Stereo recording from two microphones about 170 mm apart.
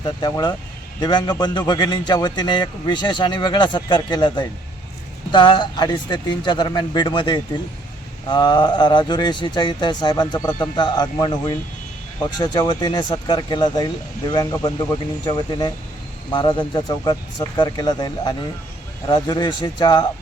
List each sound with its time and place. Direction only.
0.0 s a man's voice: 25° left (ahead or behind)